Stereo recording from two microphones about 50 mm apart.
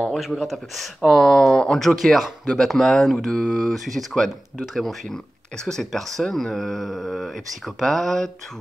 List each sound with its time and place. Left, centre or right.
0.1 s speech: centre